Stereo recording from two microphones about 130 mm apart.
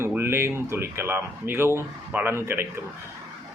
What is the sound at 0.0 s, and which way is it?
Speech, 20° right (ahead or behind).